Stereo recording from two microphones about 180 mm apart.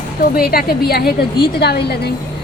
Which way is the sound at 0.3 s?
55° left (ahead or behind).